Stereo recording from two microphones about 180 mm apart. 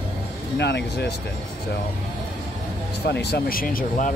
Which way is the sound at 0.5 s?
70° left (ahead or behind).